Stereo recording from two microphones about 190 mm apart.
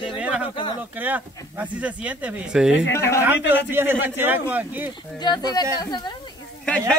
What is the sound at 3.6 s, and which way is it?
Speech, 10° right (ahead or behind).